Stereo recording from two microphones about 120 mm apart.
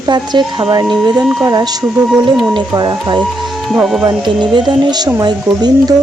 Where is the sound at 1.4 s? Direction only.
35° right (ahead or behind).